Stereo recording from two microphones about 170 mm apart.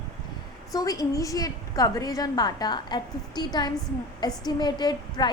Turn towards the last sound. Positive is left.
turn(degrees=25)  # may be behind; listen again after turning